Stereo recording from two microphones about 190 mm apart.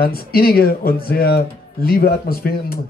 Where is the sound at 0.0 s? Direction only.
50° left (ahead or behind).